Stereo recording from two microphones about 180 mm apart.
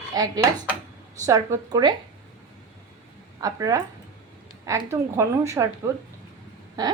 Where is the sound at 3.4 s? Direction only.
20° right (ahead or behind).